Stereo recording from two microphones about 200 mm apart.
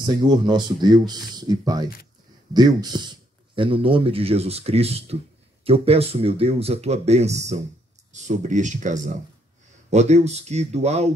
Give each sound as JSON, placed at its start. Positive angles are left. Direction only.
{"t": 0.0, "sound": "a man's voice", "side_deg": -20}